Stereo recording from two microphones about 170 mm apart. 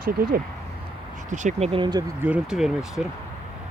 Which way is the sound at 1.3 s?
45° right (ahead or behind).